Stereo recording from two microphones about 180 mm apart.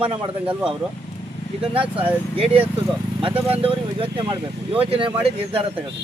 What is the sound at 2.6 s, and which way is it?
A man's voice, 30° right (ahead or behind).